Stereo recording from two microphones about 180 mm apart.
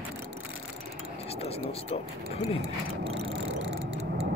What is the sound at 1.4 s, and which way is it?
Speech, 35° left (ahead or behind).